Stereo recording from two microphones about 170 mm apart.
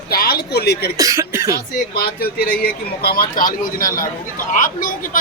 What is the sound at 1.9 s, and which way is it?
A man's voice, 65° left (ahead or behind).